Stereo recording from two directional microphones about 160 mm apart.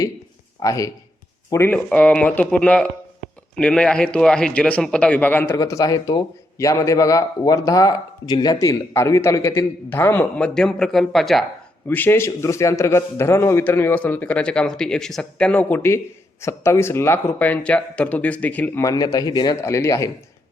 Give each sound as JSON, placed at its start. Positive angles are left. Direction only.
{"t": 0.6, "sound": "a man's voice", "side_deg": 20}
{"t": 5.5, "sound": "a man's voice", "side_deg": 20}
{"t": 11.9, "sound": "a man's voice", "side_deg": 10}